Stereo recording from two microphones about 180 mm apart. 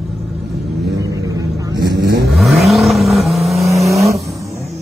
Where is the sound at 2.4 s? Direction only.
Centre (ahead or behind).